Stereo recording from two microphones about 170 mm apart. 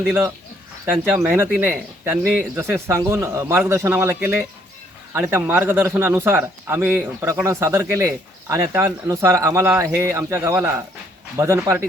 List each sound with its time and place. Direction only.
0.9 s speech: 10° right (ahead or behind)